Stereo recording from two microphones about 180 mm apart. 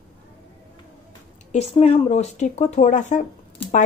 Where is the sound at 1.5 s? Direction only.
35° left (ahead or behind).